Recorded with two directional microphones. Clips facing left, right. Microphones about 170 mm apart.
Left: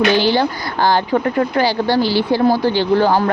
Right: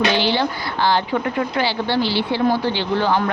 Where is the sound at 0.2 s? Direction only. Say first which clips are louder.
Left 4 dB; 45° left (ahead or behind).